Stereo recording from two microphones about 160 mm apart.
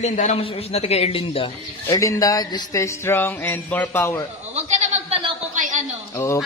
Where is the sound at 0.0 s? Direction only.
50° left (ahead or behind).